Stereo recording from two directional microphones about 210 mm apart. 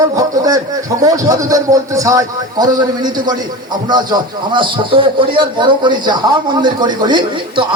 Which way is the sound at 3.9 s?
20° right (ahead or behind).